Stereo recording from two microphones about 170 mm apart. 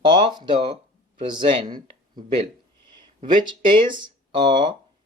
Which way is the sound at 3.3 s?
30° right (ahead or behind).